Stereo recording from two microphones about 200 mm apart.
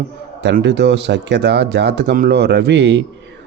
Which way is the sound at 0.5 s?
60° right (ahead or behind).